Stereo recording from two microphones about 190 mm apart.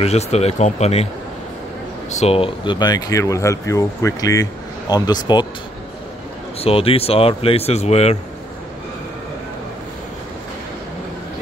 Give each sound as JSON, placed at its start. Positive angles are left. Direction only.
{"t": 0.0, "sound": "speech", "side_deg": 35}
{"t": 2.0, "sound": "speech", "side_deg": 35}
{"t": 6.6, "sound": "speech", "side_deg": 30}